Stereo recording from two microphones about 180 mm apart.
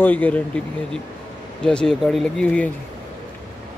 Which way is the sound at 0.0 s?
10° left (ahead or behind).